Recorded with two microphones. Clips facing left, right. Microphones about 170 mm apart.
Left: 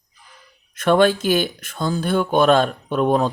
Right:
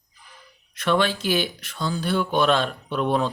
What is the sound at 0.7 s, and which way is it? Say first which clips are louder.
Speech: left 7 dB; 50° left (ahead or behind).